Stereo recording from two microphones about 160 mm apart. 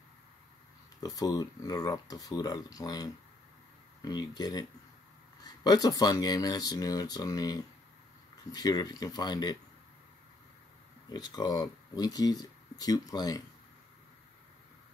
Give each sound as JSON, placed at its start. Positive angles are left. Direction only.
{"t": 1.0, "sound": "speech", "side_deg": 25}
{"t": 11.1, "sound": "speech", "side_deg": 25}